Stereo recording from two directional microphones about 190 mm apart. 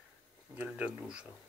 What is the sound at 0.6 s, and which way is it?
Speech, 5° right (ahead or behind).